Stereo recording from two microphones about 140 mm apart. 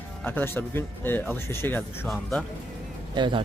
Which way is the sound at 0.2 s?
15° left (ahead or behind).